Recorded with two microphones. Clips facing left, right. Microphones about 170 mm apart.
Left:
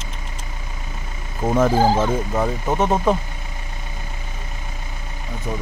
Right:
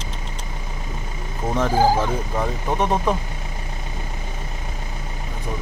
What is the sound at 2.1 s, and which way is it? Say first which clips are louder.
Speech: left 3 dB; 5° left (ahead or behind).